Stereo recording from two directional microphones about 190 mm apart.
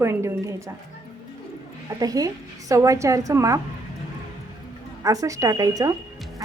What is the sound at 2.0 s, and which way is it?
A woman's voice, 20° right (ahead or behind).